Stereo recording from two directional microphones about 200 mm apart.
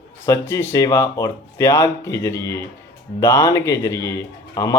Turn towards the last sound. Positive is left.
turn(degrees=15)  # may be behind; listen again after turning